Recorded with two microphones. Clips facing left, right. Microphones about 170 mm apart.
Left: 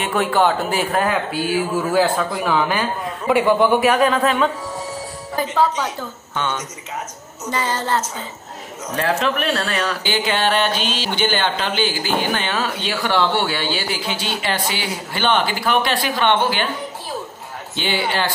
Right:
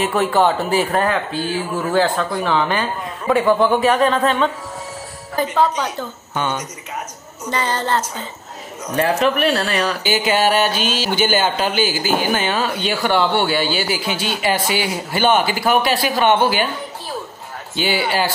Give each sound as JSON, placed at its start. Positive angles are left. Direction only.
{"t": 0.0, "sound": "a man's voice", "side_deg": 0}
{"t": 5.4, "sound": "music", "side_deg": 10}
{"t": 6.3, "sound": "speech", "side_deg": -10}
{"t": 7.5, "sound": "music", "side_deg": 5}
{"t": 8.8, "sound": "speech", "side_deg": -5}
{"t": 17.7, "sound": "speech", "side_deg": -10}